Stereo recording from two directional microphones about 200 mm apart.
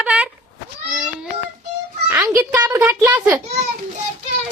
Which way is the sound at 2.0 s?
15° right (ahead or behind).